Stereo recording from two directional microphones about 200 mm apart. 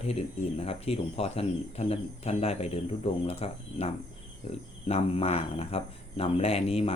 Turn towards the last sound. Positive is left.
turn(degrees=30)  # may be behind; listen again after turning